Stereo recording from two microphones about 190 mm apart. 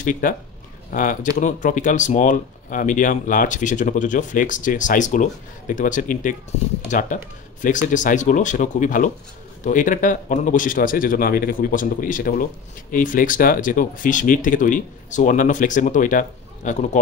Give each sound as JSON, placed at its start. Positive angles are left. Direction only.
{"t": 0.0, "sound": "speech", "side_deg": 45}